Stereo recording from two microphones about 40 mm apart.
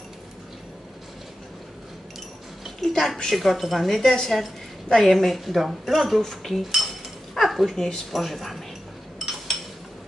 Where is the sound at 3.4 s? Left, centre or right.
Centre.